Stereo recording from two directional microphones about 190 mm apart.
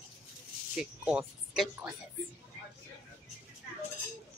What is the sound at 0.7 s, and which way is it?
A woman's voice, 5° right (ahead or behind).